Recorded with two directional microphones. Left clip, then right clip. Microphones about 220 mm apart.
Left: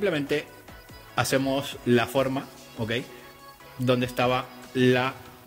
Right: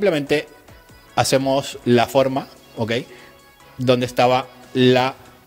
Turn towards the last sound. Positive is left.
turn(degrees=-25)  # may be behind; listen again after turning